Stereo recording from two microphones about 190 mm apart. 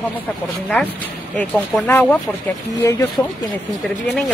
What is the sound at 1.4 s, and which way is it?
Speech, 10° left (ahead or behind).